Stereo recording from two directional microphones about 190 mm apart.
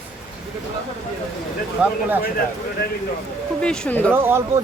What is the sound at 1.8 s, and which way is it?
Speech, 5° right (ahead or behind).